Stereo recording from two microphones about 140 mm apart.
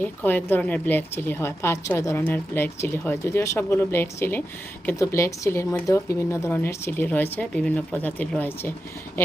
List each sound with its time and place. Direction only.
0.0 s speech: 15° left (ahead or behind)